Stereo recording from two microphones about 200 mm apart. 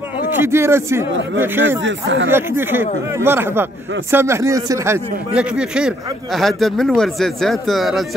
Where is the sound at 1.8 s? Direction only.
65° right (ahead or behind).